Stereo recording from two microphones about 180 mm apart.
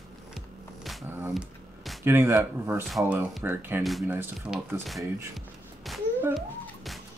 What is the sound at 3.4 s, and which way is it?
Speech, 10° right (ahead or behind).